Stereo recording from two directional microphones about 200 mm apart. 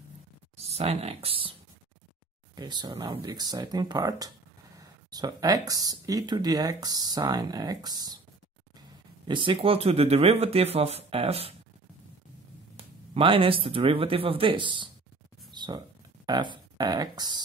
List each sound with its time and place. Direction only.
0.6 s speech: 30° right (ahead or behind)
2.5 s speech: 20° right (ahead or behind)
9.3 s speech: 25° right (ahead or behind)
12.7 s speech: 30° right (ahead or behind)
15.5 s a sound: 20° right (ahead or behind)
16.3 s speech: 20° right (ahead or behind)